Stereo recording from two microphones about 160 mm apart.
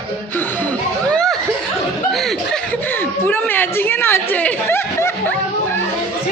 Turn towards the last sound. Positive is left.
turn(degrees=15)  # may be behind; listen again after turning